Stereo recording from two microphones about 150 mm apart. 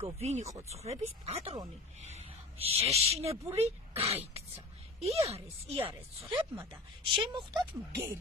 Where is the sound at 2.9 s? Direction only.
40° right (ahead or behind).